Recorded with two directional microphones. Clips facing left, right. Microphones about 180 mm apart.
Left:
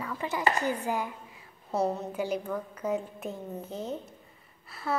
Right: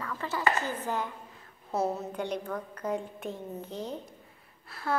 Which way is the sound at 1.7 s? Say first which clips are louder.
Left 1 dB; centre (ahead or behind).